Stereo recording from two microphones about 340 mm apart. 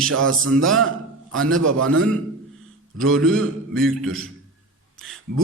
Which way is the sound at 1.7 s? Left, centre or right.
Right.